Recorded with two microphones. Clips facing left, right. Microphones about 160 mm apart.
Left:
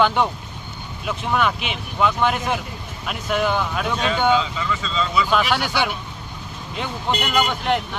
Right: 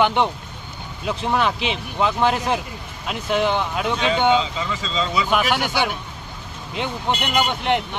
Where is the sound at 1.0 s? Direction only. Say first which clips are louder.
Right 1 dB; 30° right (ahead or behind).